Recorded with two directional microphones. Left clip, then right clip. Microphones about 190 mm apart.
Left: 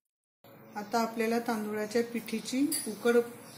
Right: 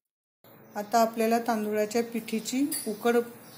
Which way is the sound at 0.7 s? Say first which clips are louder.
Right 7 dB; 40° right (ahead or behind).